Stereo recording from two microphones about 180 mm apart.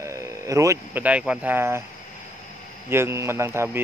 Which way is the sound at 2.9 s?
15° right (ahead or behind).